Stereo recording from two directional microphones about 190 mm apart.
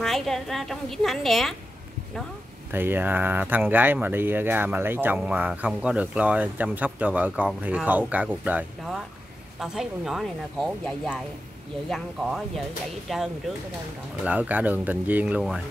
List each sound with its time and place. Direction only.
0.0 s speech: centre (ahead or behind)
2.7 s speech: 10° right (ahead or behind)